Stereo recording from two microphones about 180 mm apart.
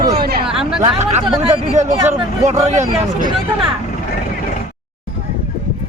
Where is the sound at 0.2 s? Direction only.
60° right (ahead or behind).